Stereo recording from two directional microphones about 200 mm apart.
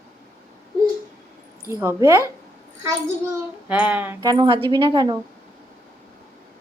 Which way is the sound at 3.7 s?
5° right (ahead or behind).